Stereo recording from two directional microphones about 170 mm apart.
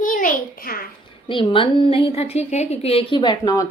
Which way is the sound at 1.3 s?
30° left (ahead or behind).